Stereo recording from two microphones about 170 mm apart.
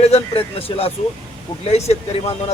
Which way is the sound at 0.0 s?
35° left (ahead or behind).